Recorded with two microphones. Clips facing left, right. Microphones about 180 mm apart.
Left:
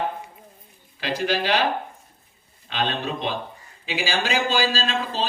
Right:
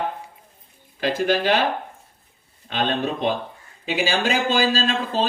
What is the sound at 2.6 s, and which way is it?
A man's voice, 45° right (ahead or behind).